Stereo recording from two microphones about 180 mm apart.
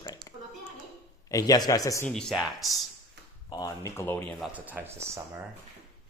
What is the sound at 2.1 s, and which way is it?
Speech, centre (ahead or behind).